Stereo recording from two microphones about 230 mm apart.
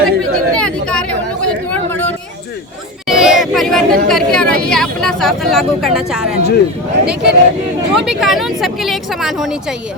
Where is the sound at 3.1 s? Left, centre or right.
Centre.